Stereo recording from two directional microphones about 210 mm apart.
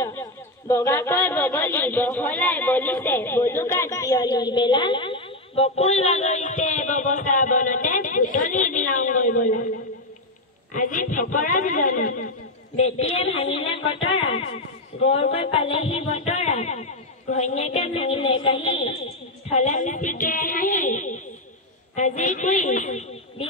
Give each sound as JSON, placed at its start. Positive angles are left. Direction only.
{"t": 0.0, "sound": "speech", "side_deg": 15}
{"t": 10.7, "sound": "a man's voice", "side_deg": 40}